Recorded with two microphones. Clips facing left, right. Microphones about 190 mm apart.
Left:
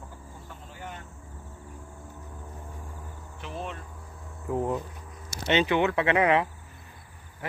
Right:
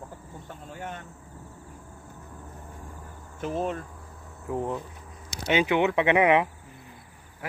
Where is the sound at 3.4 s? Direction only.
45° right (ahead or behind).